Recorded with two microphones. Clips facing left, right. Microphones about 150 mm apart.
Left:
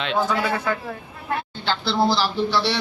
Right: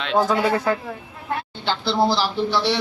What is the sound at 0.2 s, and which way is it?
Speech, 35° right (ahead or behind).